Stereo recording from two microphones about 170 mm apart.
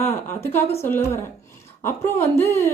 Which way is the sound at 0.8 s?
15° left (ahead or behind).